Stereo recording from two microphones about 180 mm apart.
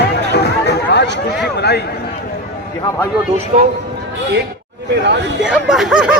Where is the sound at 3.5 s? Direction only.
35° right (ahead or behind).